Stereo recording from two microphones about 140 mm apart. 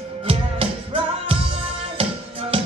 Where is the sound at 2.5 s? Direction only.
40° right (ahead or behind).